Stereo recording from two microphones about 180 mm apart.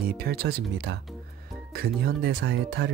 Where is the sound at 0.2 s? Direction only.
60° right (ahead or behind).